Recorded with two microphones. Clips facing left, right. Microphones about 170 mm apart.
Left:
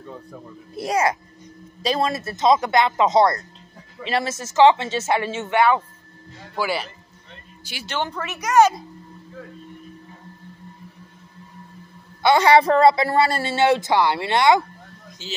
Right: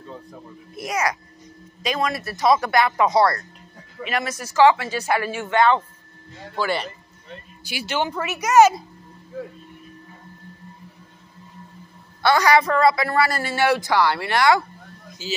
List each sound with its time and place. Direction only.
0.7 s a woman's voice: 30° left (ahead or behind); by 6.9 s 5° left (ahead or behind)
7.6 s speech: 10° right (ahead or behind)
12.2 s a woman's voice: 20° left (ahead or behind)
15.2 s speech: 5° right (ahead or behind)